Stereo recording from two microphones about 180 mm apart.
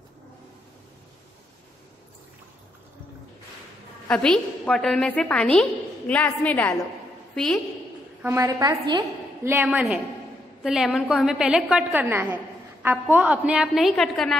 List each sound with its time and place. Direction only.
4.1 s a woman's voice: 5° left (ahead or behind)
8.2 s a woman's voice: 15° right (ahead or behind)
9.4 s a woman's voice: 10° right (ahead or behind)